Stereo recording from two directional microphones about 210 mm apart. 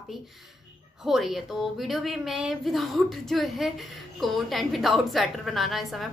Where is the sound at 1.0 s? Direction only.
Centre (ahead or behind).